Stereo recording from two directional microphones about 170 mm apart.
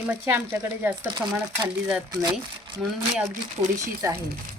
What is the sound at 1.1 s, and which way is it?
Speech, 25° right (ahead or behind).